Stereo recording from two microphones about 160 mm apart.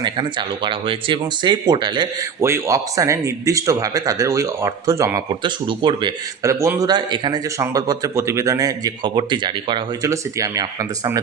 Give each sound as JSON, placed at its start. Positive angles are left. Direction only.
{"t": 0.0, "sound": "speech", "side_deg": -30}
{"t": 2.4, "sound": "speech", "side_deg": -15}